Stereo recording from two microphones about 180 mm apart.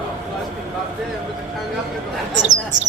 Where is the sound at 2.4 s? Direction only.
40° right (ahead or behind).